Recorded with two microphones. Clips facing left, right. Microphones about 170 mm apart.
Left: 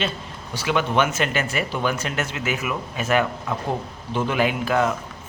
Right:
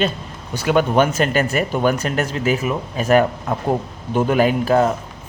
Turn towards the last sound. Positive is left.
turn(degrees=-40)  # may be behind; listen again after turning